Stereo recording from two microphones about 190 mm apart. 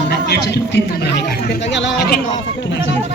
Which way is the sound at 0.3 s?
60° left (ahead or behind).